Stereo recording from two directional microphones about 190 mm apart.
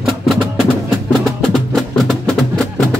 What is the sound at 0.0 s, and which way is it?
Music, centre (ahead or behind).